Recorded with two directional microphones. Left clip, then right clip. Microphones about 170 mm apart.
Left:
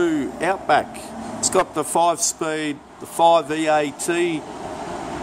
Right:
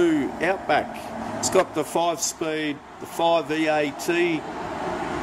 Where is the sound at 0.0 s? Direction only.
Centre (ahead or behind).